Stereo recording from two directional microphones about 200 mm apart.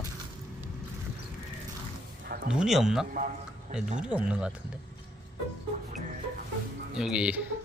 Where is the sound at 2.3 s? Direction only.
45° right (ahead or behind).